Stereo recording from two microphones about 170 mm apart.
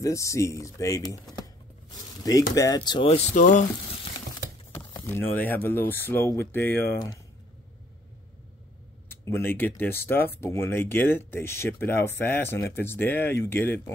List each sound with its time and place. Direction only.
0.0 s speech: 20° left (ahead or behind)
2.5 s speech: 20° left (ahead or behind); by 3.6 s 50° left (ahead or behind)
5.0 s speech: 10° left (ahead or behind)
9.1 s speech: 15° left (ahead or behind)